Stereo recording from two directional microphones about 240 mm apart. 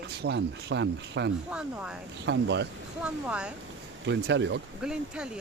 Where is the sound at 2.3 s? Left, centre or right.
Right.